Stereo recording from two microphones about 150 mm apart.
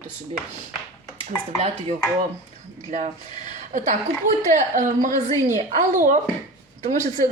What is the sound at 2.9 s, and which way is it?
Speech, 55° right (ahead or behind).